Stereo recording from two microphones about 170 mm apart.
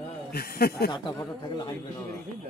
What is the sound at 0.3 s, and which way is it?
Speech, 65° left (ahead or behind).